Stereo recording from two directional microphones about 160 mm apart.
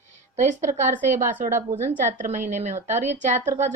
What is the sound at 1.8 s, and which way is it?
A woman's voice, 50° right (ahead or behind).